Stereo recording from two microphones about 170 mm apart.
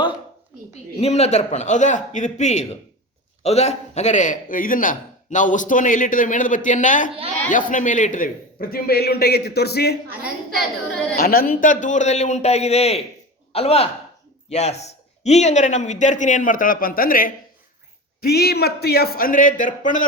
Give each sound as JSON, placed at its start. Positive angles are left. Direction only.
{"t": 0.9, "sound": "a man's voice", "side_deg": 40}
{"t": 10.1, "sound": "a woman's voice", "side_deg": -5}
{"t": 11.2, "sound": "a man's voice", "side_deg": 60}
{"t": 18.2, "sound": "a man's voice", "side_deg": 65}